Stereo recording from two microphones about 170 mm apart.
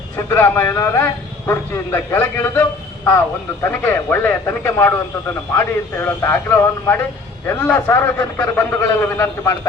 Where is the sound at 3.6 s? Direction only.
10° left (ahead or behind).